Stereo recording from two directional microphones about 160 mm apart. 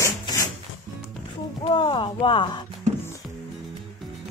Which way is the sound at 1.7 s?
30° left (ahead or behind).